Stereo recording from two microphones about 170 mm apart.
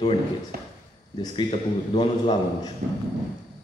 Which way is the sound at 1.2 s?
30° left (ahead or behind).